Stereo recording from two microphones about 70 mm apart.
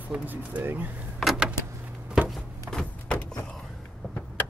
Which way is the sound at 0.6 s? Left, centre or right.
Right.